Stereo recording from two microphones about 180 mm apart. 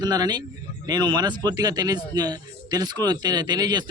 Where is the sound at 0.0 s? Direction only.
20° right (ahead or behind).